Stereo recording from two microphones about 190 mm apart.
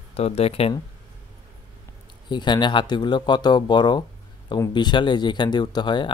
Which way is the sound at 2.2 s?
25° left (ahead or behind).